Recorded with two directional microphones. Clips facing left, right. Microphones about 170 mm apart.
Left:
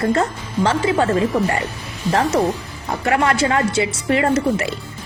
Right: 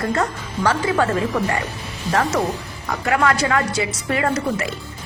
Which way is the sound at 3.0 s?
25° left (ahead or behind).